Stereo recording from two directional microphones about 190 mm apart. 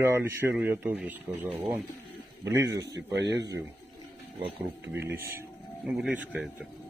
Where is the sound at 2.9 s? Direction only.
65° right (ahead or behind).